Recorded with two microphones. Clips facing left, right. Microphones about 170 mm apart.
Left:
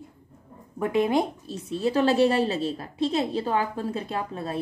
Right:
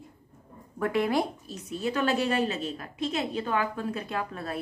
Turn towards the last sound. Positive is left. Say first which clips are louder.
# left 3 dB
turn(degrees=25)  # may be behind; listen again after turning